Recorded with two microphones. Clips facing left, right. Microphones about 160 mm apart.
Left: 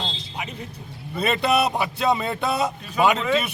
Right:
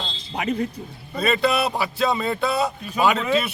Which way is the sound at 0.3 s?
65° right (ahead or behind).